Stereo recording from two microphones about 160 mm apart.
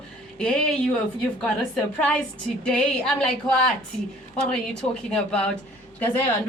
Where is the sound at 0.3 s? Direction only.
5° left (ahead or behind).